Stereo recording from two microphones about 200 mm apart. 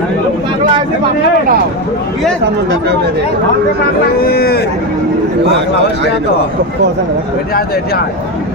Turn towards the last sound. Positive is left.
turn(degrees=50)  # may be behind; listen again after turning